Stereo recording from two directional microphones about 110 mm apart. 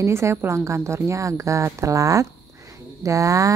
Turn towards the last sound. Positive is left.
turn(degrees=-30)  # may be behind; listen again after turning